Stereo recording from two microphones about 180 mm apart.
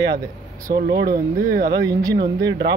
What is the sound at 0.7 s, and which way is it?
Speech, 60° right (ahead or behind).